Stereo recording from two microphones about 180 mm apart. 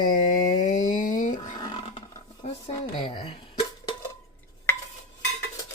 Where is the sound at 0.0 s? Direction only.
50° left (ahead or behind).